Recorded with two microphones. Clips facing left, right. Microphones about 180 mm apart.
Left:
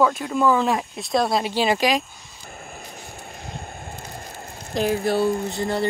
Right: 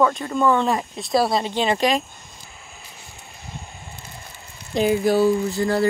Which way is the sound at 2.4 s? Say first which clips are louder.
Left 12 dB; 55° left (ahead or behind).